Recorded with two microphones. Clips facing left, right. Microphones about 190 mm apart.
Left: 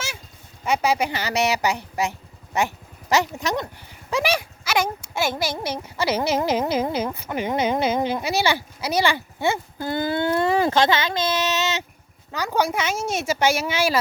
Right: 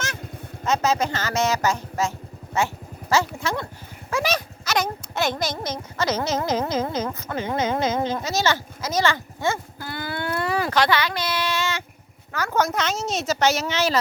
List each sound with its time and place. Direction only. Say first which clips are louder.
0.6 s a woman's voice: even; 10° left (ahead or behind)